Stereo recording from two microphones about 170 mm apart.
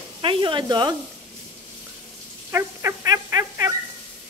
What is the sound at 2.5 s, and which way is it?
Dog, 15° right (ahead or behind).